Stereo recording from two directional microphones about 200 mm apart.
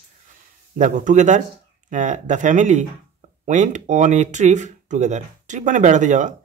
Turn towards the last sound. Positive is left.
turn(degrees=-40)  # may be behind; listen again after turning